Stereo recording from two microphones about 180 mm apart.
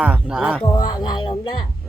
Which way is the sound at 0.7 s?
25° left (ahead or behind).